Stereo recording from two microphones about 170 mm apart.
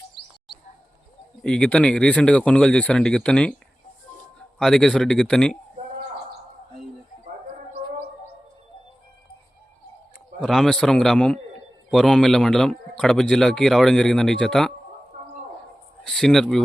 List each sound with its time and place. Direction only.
0.2 s bird: 75° left (ahead or behind)
1.4 s a man's voice: 5° left (ahead or behind)
4.6 s a man's voice: centre (ahead or behind)
10.4 s a man's voice: centre (ahead or behind)
16.0 s a man's voice: centre (ahead or behind)